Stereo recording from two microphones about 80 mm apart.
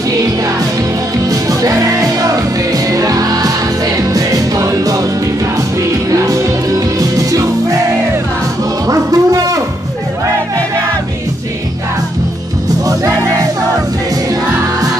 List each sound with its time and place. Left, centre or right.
1.3 s music: right
6.0 s music: right
8.8 s music: right